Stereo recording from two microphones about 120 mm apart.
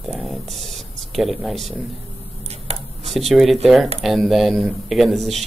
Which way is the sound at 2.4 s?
60° right (ahead or behind).